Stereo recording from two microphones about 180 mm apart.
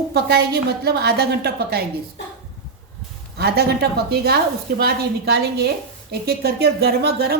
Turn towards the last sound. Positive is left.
turn(degrees=-60)  # may be behind; listen again after turning